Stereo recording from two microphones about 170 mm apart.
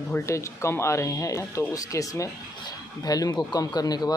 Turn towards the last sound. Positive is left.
turn(degrees=25)  # may be behind; listen again after turning